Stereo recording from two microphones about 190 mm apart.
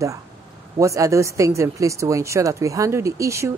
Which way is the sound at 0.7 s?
15° right (ahead or behind).